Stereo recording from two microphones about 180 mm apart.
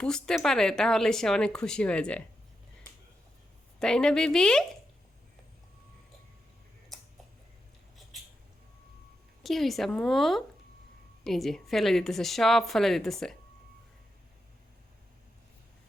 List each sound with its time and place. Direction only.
0.0 s speech: 5° left (ahead or behind)
3.8 s speech: 5° left (ahead or behind)
9.4 s speech: centre (ahead or behind)